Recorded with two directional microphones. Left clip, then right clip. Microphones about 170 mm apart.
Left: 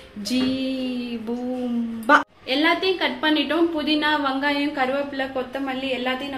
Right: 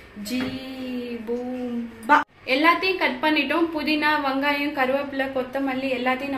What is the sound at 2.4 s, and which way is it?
A woman's voice, 25° left (ahead or behind).